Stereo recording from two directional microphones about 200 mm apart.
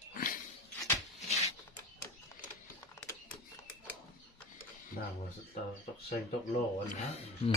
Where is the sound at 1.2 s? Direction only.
35° left (ahead or behind).